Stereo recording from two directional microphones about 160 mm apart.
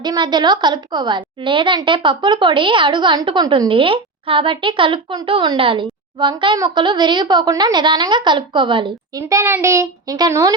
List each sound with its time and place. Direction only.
0.0 s a woman's voice: 25° right (ahead or behind)
9.2 s a woman's voice: 15° right (ahead or behind)